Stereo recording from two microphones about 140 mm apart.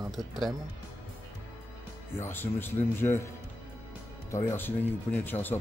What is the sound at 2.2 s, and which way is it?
Speech, 15° left (ahead or behind).